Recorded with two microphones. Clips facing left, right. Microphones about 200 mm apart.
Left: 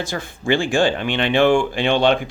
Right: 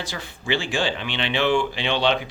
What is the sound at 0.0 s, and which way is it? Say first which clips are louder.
Speech: left 7 dB; 50° left (ahead or behind).